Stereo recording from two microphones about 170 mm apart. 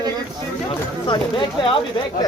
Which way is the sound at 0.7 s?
30° left (ahead or behind).